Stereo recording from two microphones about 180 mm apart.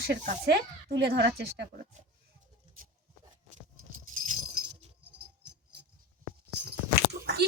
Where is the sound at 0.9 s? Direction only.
65° right (ahead or behind).